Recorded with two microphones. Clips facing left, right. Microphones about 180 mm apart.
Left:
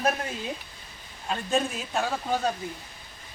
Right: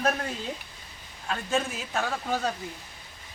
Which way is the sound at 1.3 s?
15° left (ahead or behind).